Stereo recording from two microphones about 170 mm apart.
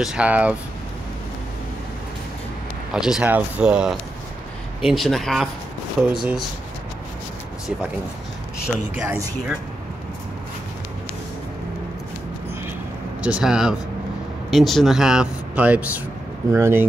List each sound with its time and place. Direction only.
0.0 s speech: 5° right (ahead or behind)
2.9 s speech: 5° right (ahead or behind)
8.6 s speech: 5° right (ahead or behind)
13.2 s speech: 5° right (ahead or behind)